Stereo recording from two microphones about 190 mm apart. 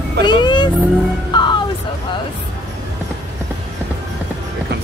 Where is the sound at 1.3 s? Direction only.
25° left (ahead or behind).